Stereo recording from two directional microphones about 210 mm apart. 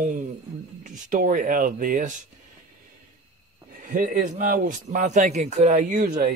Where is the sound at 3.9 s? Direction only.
40° right (ahead or behind).